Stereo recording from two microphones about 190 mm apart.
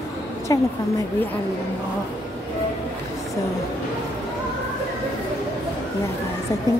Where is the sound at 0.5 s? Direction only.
20° left (ahead or behind).